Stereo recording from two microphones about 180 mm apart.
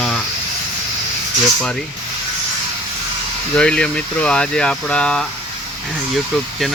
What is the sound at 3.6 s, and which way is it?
Speech, 5° left (ahead or behind).